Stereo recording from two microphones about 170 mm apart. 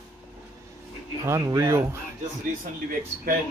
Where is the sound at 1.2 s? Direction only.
20° right (ahead or behind).